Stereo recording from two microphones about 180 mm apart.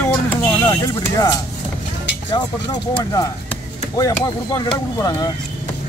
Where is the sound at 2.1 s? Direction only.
80° left.